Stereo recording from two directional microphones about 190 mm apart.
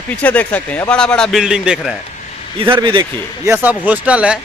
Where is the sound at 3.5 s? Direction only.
10° right (ahead or behind).